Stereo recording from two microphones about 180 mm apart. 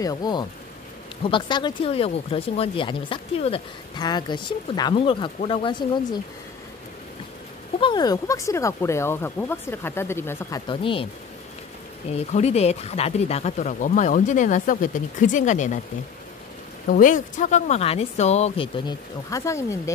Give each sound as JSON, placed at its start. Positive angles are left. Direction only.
{"t": 0.0, "sound": "speech", "side_deg": 20}
{"t": 7.8, "sound": "speech", "side_deg": 25}
{"t": 10.7, "sound": "speech", "side_deg": 30}
{"t": 12.1, "sound": "speech", "side_deg": 35}
{"t": 16.9, "sound": "speech", "side_deg": 45}
{"t": 18.9, "sound": "speech", "side_deg": 15}